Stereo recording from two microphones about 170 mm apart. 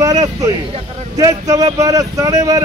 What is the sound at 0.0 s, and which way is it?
A man's voice, 20° right (ahead or behind).